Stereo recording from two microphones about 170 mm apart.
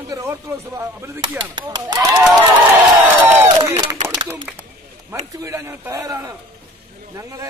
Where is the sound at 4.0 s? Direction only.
30° right (ahead or behind).